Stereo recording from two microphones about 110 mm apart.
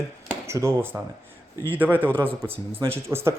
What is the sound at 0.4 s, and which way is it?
Speech, 25° right (ahead or behind).